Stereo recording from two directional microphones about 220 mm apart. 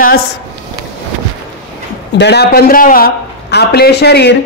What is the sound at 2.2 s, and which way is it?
A man's voice, 50° left (ahead or behind).